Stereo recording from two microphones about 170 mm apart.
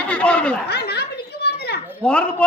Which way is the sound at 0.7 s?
70° left (ahead or behind).